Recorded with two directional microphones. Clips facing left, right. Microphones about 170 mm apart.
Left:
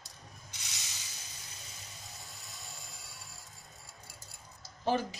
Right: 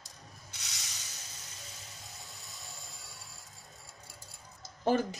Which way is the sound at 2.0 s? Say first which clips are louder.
Even; centre (ahead or behind).